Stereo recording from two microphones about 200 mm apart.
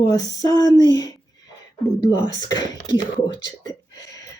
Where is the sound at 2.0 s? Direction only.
20° left (ahead or behind).